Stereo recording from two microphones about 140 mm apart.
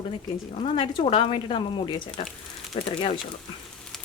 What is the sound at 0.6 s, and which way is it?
Speech, 45° left (ahead or behind).